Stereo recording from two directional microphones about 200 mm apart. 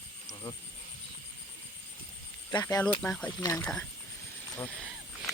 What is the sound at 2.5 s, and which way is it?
Speech, 20° left (ahead or behind).